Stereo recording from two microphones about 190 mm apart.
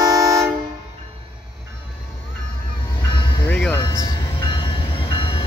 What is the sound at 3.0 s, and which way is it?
Train, 25° left (ahead or behind).